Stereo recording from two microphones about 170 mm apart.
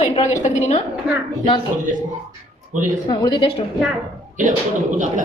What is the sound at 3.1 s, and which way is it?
Speech, 25° left (ahead or behind).